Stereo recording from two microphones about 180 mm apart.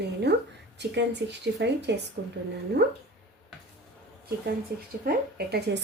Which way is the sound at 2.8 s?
65° right (ahead or behind).